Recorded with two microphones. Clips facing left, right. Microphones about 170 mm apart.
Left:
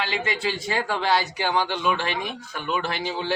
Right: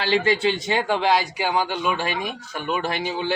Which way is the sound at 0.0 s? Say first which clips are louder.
Right 6 dB; 30° right (ahead or behind).